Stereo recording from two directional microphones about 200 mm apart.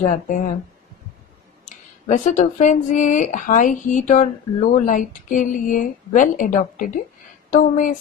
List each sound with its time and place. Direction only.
0.0 s speech: 40° left (ahead or behind)
1.7 s speech: 40° left (ahead or behind)